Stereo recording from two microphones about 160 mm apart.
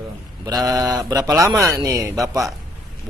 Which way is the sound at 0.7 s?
25° right (ahead or behind).